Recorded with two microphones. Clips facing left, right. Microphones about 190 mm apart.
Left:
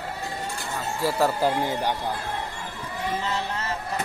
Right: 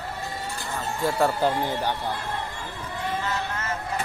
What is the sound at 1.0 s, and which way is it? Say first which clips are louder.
Speech: even; 5° left (ahead or behind).